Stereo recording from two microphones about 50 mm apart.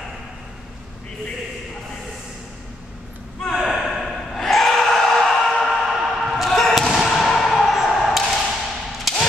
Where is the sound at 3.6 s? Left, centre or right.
Centre.